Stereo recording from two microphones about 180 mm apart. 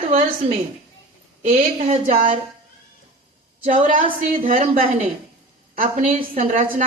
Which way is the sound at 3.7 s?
45° right (ahead or behind).